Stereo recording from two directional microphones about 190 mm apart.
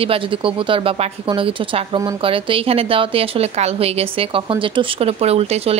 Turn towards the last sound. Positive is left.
turn(degrees=-30)  # may be behind; listen again after turning